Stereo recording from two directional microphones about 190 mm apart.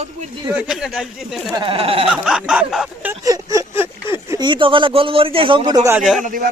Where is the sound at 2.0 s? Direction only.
Centre (ahead or behind); by 6.0 s 20° right (ahead or behind).